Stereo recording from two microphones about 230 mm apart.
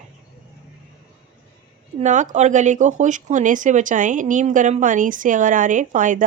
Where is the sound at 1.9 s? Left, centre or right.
Right.